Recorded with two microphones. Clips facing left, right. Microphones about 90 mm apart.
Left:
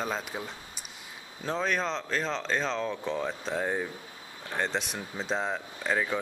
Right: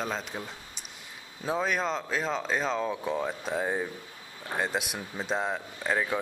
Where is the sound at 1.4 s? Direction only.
5° right (ahead or behind).